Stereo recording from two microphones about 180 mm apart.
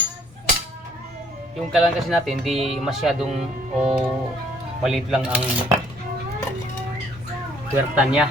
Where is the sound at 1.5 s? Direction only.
Centre (ahead or behind).